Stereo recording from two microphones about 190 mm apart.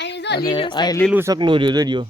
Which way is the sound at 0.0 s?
65° left (ahead or behind).